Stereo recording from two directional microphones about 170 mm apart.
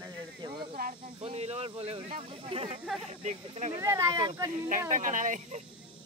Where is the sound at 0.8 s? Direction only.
60° right (ahead or behind).